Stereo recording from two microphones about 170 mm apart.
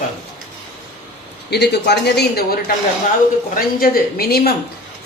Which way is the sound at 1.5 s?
75° left (ahead or behind).